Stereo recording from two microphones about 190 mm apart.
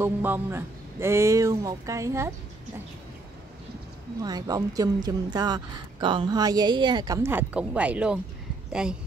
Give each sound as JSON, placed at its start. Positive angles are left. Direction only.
{"t": 0.0, "sound": "speech", "side_deg": -10}
{"t": 4.2, "sound": "a woman's voice", "side_deg": -20}